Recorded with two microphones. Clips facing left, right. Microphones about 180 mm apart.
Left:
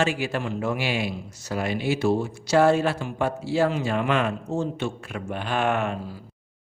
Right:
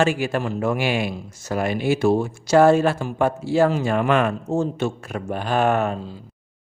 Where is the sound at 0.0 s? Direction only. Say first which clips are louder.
Right 4 dB; 45° right (ahead or behind).